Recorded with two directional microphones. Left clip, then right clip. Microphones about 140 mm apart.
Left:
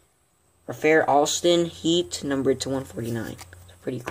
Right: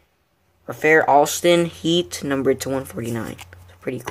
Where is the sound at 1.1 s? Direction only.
45° right (ahead or behind).